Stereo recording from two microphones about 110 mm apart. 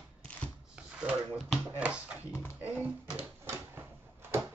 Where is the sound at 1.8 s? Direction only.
10° right (ahead or behind).